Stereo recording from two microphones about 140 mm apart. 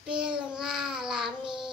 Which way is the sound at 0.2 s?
5° right (ahead or behind).